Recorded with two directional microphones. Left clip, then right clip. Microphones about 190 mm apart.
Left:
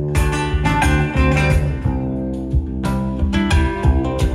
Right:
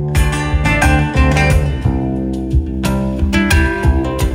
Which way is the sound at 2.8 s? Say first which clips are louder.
Right 4 dB; 30° right (ahead or behind).